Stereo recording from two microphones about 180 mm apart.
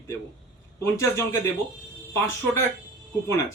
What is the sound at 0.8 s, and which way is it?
A man's voice, 15° left (ahead or behind).